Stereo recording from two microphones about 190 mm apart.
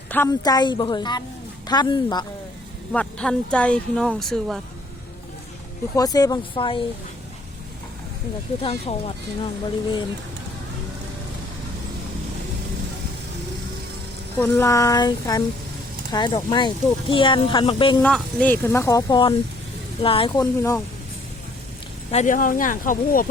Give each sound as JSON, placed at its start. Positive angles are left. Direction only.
{"t": 0.1, "sound": "speech", "side_deg": 15}
{"t": 2.9, "sound": "speech", "side_deg": 5}
{"t": 6.0, "sound": "speech", "side_deg": 20}
{"t": 8.6, "sound": "speech", "side_deg": 30}
{"t": 14.3, "sound": "speech", "side_deg": 10}
{"t": 18.0, "sound": "speech", "side_deg": 5}
{"t": 22.1, "sound": "speech", "side_deg": 40}